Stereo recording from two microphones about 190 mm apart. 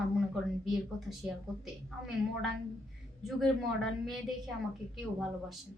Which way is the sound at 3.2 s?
Centre (ahead or behind).